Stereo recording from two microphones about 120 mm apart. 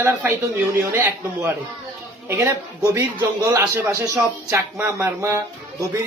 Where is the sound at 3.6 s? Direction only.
15° right (ahead or behind).